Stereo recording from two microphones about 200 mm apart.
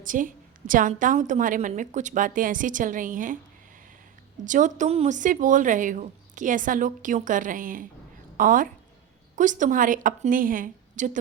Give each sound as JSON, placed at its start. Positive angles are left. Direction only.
{"t": 0.0, "sound": "a woman's voice", "side_deg": -40}
{"t": 4.4, "sound": "a woman's voice", "side_deg": -40}